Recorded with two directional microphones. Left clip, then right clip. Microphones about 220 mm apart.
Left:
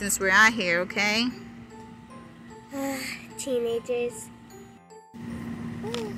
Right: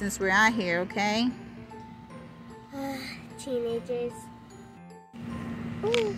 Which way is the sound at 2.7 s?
25° left (ahead or behind).